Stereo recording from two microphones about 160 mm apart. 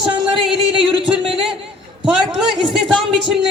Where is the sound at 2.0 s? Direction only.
5° right (ahead or behind).